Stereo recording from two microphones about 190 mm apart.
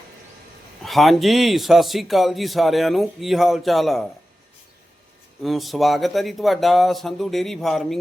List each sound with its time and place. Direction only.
0.8 s a man's voice: centre (ahead or behind)
5.4 s a man's voice: centre (ahead or behind)